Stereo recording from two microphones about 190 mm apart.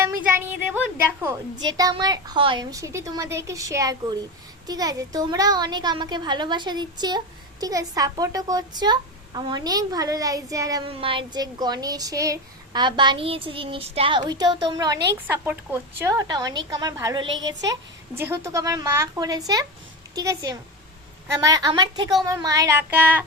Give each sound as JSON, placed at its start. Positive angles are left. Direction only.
{"t": 0.0, "sound": "a sound", "side_deg": -10}
{"t": 1.2, "sound": "speech", "side_deg": -20}
{"t": 10.8, "sound": "speech", "side_deg": -30}